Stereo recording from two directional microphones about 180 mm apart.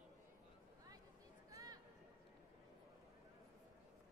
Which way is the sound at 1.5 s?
20° right (ahead or behind).